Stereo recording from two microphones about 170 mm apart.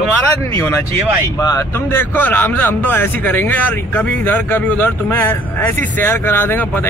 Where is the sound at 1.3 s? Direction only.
20° left (ahead or behind).